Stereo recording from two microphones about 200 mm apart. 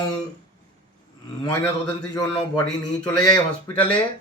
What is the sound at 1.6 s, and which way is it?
Speech, 20° left (ahead or behind).